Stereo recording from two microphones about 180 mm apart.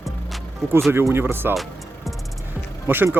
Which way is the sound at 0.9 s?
10° right (ahead or behind).